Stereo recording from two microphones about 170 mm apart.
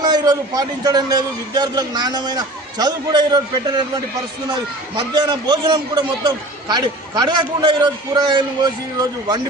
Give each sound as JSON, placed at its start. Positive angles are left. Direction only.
{"t": 0.0, "sound": "a man's voice", "side_deg": -25}
{"t": 4.9, "sound": "a man's voice", "side_deg": -25}